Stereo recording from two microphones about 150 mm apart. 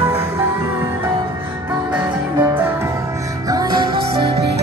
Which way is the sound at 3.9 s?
90° right.